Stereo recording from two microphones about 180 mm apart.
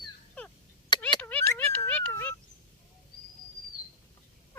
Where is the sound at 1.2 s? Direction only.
10° left (ahead or behind).